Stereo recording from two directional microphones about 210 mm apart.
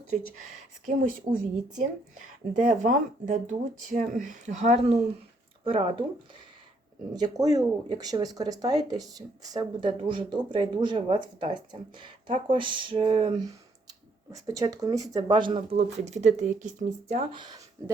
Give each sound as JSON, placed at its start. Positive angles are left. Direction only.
{"t": 0.9, "sound": "speech", "side_deg": -40}
{"t": 7.1, "sound": "speech", "side_deg": -20}
{"t": 14.3, "sound": "speech", "side_deg": -15}